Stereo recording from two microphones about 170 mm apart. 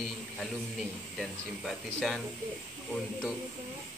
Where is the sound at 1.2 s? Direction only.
Centre (ahead or behind).